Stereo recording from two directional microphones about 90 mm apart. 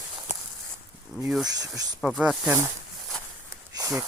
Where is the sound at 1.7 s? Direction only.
45° right (ahead or behind).